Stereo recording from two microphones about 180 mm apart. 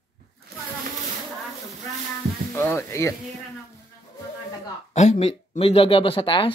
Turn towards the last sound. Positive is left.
turn(degrees=30)  # may be behind; listen again after turning